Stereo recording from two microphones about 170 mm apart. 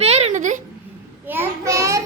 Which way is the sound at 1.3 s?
15° right (ahead or behind).